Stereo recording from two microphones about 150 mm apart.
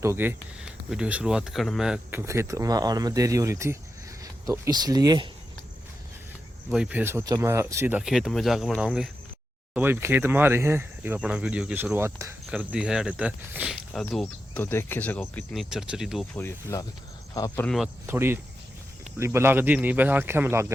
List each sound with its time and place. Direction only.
0.0 s speech: 15° right (ahead or behind)
6.7 s speech: 5° right (ahead or behind)
8.0 s speech: centre (ahead or behind)
9.7 s speech: 15° right (ahead or behind)
14.5 s speech: 15° left (ahead or behind)
15.5 s speech: 5° right (ahead or behind)
16.3 s speech: 20° left (ahead or behind)
18.0 s speech: 15° right (ahead or behind)